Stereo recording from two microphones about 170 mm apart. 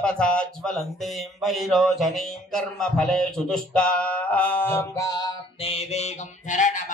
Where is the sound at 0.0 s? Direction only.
5° left (ahead or behind); by 5.3 s 20° left (ahead or behind).